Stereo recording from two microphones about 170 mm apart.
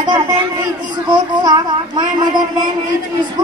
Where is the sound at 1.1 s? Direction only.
25° right (ahead or behind).